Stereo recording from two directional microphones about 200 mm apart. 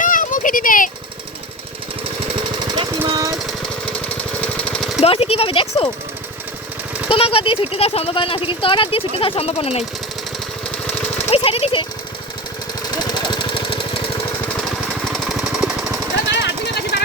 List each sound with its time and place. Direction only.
0.0 s a sound: 40° left (ahead or behind)
3.1 s jackhammer: 15° right (ahead or behind)
4.4 s jackhammer: 5° left (ahead or behind)
5.0 s speech: 30° left (ahead or behind)
7.1 s speech: 30° left (ahead or behind)
11.2 s speech: 30° left (ahead or behind)
12.9 s engine: 20° left (ahead or behind)
15.1 s jackhammer: centre (ahead or behind)
16.3 s jackhammer: 55° left (ahead or behind)